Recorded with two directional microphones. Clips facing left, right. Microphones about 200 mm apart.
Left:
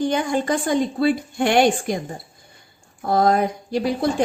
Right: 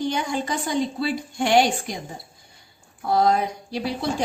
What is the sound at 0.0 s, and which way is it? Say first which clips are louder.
A woman's voice: left 4 dB; 50° left (ahead or behind).